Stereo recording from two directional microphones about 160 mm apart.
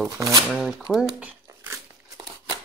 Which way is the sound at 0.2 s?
25° right (ahead or behind).